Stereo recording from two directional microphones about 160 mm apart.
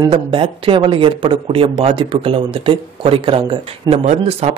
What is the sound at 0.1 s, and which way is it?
Speech, 35° right (ahead or behind).